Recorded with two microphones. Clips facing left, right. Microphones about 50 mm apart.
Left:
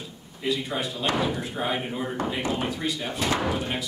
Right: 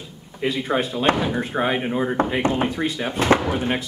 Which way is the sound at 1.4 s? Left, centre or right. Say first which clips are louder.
Right 6 dB; right.